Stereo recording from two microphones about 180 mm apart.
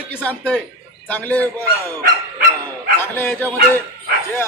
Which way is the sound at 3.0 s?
10° left (ahead or behind).